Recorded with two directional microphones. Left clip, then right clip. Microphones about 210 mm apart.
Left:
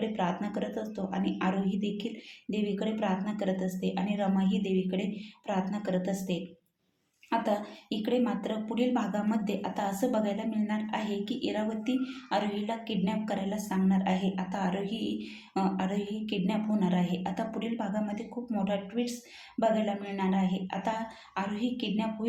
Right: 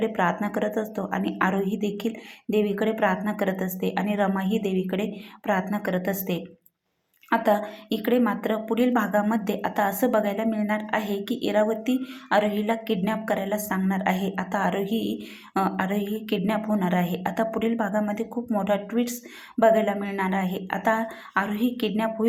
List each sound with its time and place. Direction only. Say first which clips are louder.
0.0 s a woman's voice: right 8 dB; 25° right (ahead or behind)